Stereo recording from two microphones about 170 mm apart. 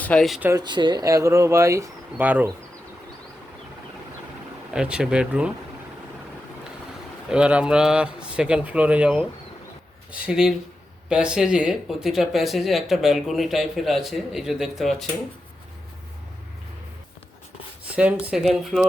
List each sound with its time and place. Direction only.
0.0 s speech: 5° left (ahead or behind)
0.6 s speech: 25° right (ahead or behind); by 2.5 s 10° right (ahead or behind)
4.7 s speech: 5° right (ahead or behind)
7.3 s speech: 5° right (ahead or behind)
17.8 s speech: 5° right (ahead or behind)